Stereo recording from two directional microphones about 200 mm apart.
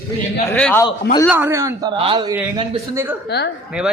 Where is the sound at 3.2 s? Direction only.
55° left (ahead or behind).